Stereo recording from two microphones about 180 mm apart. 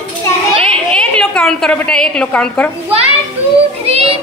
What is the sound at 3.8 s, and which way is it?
Child singing, 35° right (ahead or behind).